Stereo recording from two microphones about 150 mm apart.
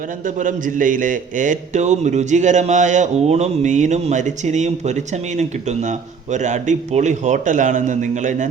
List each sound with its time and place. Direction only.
0.3 s a man's voice: 60° right (ahead or behind)